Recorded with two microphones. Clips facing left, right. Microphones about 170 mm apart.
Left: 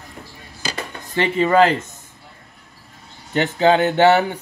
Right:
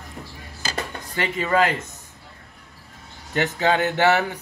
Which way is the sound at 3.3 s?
30° left (ahead or behind).